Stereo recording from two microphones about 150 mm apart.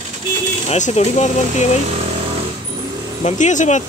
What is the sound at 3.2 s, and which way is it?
Speech, 55° left (ahead or behind).